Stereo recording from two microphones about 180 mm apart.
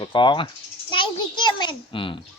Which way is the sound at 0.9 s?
25° left (ahead or behind).